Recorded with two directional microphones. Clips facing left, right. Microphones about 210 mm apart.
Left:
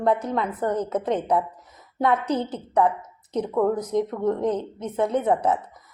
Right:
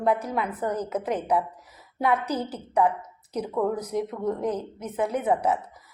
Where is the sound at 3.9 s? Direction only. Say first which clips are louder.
Left 4 dB; 25° left (ahead or behind).